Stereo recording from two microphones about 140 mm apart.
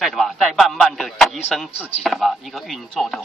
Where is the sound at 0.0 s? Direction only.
Centre (ahead or behind).